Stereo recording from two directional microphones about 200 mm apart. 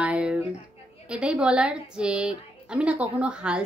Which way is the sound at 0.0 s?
5° right (ahead or behind).